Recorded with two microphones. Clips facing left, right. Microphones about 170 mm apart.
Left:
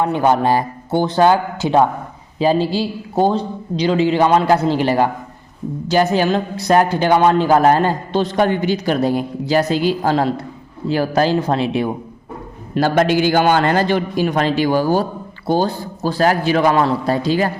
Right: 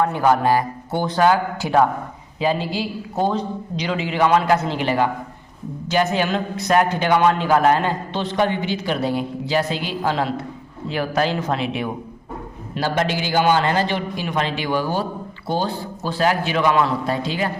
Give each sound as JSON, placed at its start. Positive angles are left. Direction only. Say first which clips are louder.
{"t": 0.0, "sound": "a man's voice", "louder": "left 2 dB", "side_deg": 25}
{"t": 12.7, "sound": "a man's voice", "louder": "left 7 dB", "side_deg": 50}